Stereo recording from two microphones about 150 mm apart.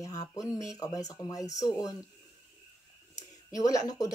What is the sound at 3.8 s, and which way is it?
Speech, 25° left (ahead or behind).